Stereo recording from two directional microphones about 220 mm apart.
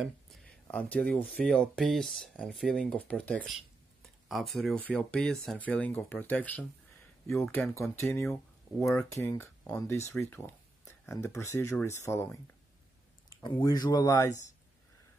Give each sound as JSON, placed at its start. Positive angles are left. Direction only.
{"t": 0.0, "sound": "speech", "side_deg": 0}
{"t": 13.3, "sound": "speech", "side_deg": 15}